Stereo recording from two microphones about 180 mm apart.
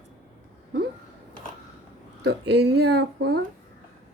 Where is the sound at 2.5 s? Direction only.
65° right (ahead or behind).